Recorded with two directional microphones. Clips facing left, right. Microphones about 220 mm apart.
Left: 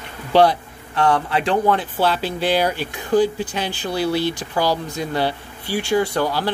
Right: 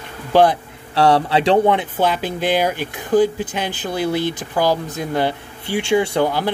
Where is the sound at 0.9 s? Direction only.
30° right (ahead or behind).